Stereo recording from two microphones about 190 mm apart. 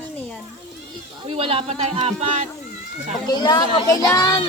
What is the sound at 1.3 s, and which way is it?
Speech, 30° right (ahead or behind).